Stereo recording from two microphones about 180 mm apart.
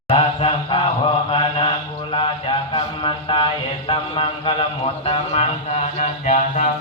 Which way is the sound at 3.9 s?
30° left (ahead or behind).